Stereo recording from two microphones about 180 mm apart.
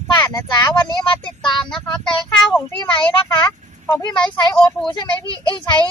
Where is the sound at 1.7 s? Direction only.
5° left (ahead or behind).